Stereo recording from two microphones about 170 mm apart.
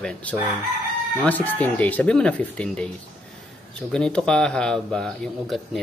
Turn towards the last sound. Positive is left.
turn(degrees=5)  # may be behind; listen again after turning